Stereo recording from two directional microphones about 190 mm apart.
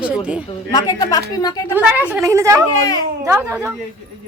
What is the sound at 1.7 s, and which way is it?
A woman's voice, 5° right (ahead or behind).